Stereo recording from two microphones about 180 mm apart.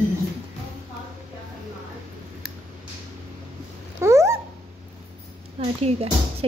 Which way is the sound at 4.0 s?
15° right (ahead or behind).